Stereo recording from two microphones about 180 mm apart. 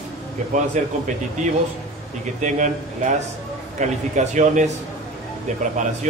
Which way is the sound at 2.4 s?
45° right (ahead or behind).